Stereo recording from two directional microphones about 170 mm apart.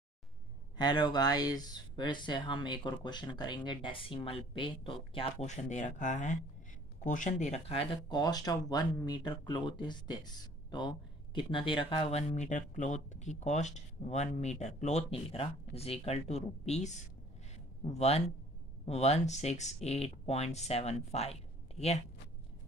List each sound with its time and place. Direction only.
0.7 s speech: 25° left (ahead or behind)